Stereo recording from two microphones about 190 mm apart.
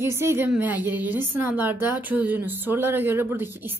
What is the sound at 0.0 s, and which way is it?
A woman's voice, 15° right (ahead or behind).